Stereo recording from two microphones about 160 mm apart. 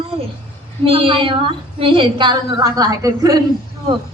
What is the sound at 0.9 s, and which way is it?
A woman's voice, 35° right (ahead or behind).